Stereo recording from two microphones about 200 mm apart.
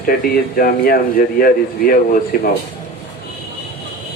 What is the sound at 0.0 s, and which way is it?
Speech, 45° left (ahead or behind).